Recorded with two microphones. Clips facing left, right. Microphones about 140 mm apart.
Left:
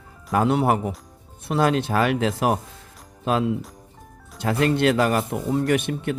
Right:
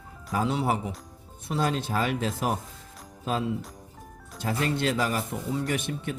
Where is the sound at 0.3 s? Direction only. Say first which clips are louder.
Left 7 dB; 60° left (ahead or behind).